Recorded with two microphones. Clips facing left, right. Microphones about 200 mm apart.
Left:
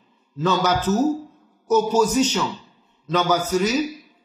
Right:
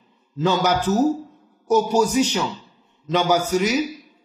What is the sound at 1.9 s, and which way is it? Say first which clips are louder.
A man's voice: even; 10° right (ahead or behind).